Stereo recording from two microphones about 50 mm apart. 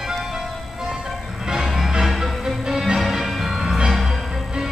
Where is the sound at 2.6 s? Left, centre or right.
Centre.